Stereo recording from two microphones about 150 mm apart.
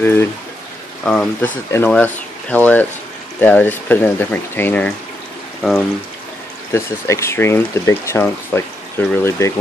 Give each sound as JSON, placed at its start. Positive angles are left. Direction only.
{"t": 0.0, "sound": "speech", "side_deg": 15}
{"t": 6.7, "sound": "speech", "side_deg": 20}